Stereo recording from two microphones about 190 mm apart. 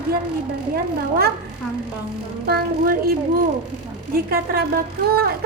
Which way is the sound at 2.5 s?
55° right (ahead or behind).